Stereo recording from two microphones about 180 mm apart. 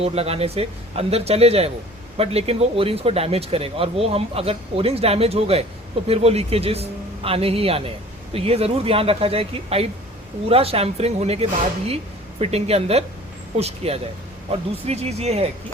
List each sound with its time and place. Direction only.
0.0 s speech: 35° right (ahead or behind)